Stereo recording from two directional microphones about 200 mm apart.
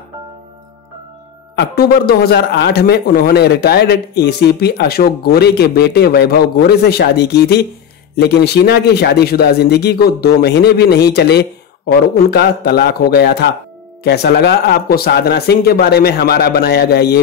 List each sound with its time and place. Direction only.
1.5 s speech: 55° left (ahead or behind)